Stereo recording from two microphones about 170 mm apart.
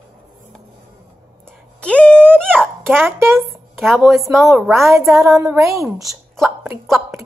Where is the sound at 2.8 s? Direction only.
15° right (ahead or behind).